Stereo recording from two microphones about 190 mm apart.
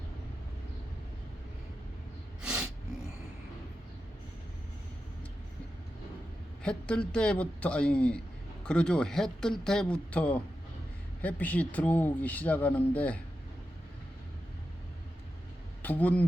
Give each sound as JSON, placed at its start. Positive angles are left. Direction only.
{"t": 2.4, "sound": "a sound", "side_deg": -5}
{"t": 6.6, "sound": "speech", "side_deg": 5}
{"t": 15.8, "sound": "speech", "side_deg": 10}